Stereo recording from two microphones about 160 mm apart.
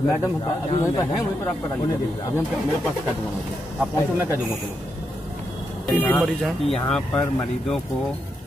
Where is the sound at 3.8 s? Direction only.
10° right (ahead or behind).